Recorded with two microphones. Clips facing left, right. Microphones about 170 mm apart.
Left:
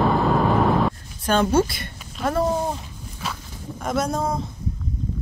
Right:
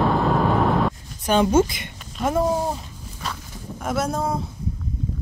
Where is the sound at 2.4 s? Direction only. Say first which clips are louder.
Even; 5° right (ahead or behind).